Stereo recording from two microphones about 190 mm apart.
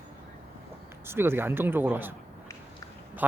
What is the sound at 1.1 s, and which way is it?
Speech, 10° right (ahead or behind).